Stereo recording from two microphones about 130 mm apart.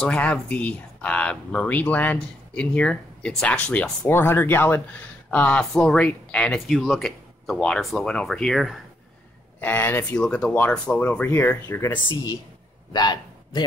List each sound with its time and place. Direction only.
0.0 s speech: 10° left (ahead or behind)
9.6 s speech: 15° left (ahead or behind)
12.9 s a man's voice: 35° left (ahead or behind)